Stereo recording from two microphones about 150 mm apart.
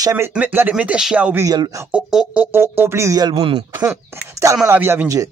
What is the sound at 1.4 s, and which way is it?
Speech, 25° right (ahead or behind).